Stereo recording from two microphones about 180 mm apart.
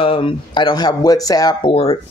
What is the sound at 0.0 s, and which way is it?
Speech, 30° left (ahead or behind).